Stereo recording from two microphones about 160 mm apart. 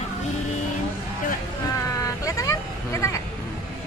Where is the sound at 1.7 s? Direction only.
20° left (ahead or behind).